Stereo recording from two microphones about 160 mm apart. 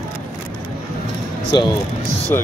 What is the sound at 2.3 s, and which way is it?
Speech, 15° left (ahead or behind).